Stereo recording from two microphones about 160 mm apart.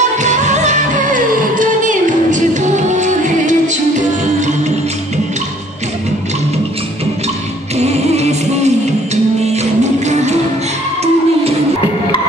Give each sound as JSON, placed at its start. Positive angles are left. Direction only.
{"t": 0.2, "sound": "music", "side_deg": -50}
{"t": 7.7, "sound": "music", "side_deg": -45}